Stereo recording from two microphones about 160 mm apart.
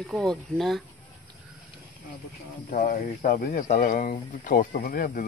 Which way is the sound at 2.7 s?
65° left (ahead or behind).